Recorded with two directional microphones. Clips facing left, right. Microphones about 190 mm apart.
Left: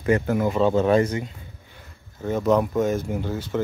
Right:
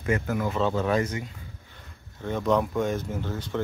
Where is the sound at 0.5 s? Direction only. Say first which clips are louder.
Left 6 dB; 15° left (ahead or behind).